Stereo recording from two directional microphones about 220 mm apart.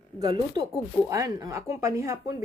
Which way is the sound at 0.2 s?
15° right (ahead or behind).